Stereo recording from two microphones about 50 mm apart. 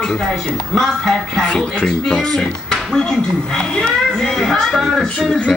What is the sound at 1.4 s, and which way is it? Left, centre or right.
Speech, centre.